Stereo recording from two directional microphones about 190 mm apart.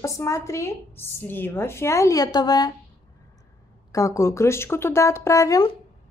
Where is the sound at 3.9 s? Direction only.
15° left (ahead or behind).